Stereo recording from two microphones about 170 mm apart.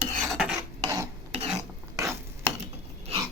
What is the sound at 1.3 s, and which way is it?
Filing, 35° right (ahead or behind).